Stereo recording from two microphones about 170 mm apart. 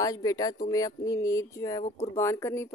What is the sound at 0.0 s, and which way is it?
A woman's voice, 20° left (ahead or behind).